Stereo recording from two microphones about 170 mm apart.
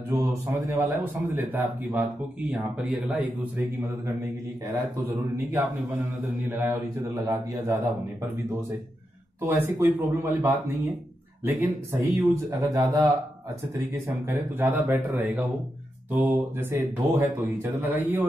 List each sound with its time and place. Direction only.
0.1 s speech: 15° right (ahead or behind)
5.5 s speech: 10° right (ahead or behind)
9.4 s speech: 15° right (ahead or behind)
14.6 s speech: 15° right (ahead or behind)